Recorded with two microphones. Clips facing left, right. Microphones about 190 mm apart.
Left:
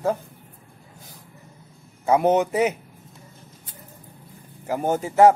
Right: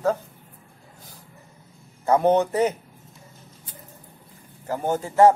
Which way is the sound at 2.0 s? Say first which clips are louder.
Even; 10° left (ahead or behind).